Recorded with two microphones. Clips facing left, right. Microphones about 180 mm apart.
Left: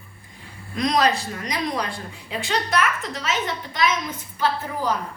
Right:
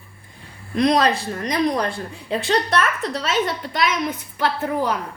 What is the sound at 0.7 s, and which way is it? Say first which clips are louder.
Speech: right 3 dB; 30° right (ahead or behind).